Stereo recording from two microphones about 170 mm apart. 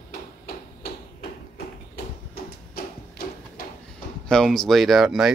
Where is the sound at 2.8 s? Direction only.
60° left (ahead or behind).